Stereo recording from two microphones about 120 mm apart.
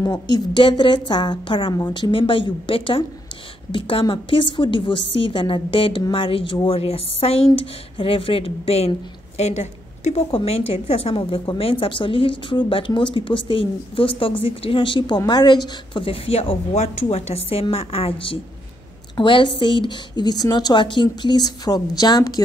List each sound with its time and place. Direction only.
0.0 s a woman's voice: 35° left (ahead or behind); by 8.9 s 55° left (ahead or behind)
9.4 s a woman's voice: 65° left (ahead or behind); by 22.4 s 35° left (ahead or behind)